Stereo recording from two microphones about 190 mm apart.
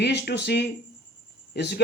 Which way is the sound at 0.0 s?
60° left (ahead or behind).